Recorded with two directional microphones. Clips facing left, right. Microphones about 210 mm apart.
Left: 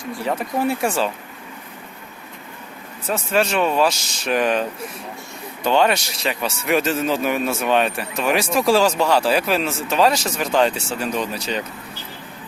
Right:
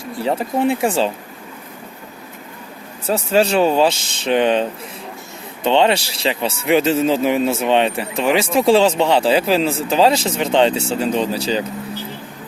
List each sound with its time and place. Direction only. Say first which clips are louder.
0.2 s speech: right 4 dB; 30° right (ahead or behind)
3.1 s speech: right 4 dB; 30° right (ahead or behind)